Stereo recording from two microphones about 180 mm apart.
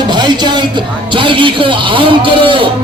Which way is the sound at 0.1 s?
25° right (ahead or behind).